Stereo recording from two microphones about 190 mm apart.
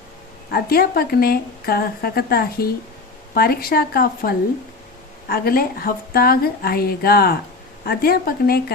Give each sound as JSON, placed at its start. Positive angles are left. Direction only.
{"t": 0.5, "sound": "speech", "side_deg": 55}